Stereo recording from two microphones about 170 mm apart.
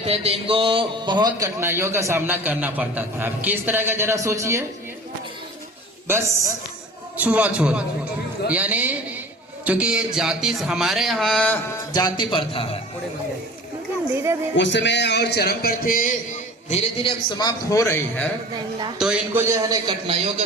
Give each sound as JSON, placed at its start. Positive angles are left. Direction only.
{"t": 0.0, "sound": "a man's voice", "side_deg": -35}
{"t": 6.1, "sound": "a man's voice", "side_deg": -15}
{"t": 11.9, "sound": "a man's voice", "side_deg": 25}
{"t": 14.5, "sound": "a man's voice", "side_deg": 90}
{"t": 16.6, "sound": "a man's voice", "side_deg": 35}
{"t": 18.5, "sound": "speech", "side_deg": -25}
{"t": 18.9, "sound": "a man's voice", "side_deg": -5}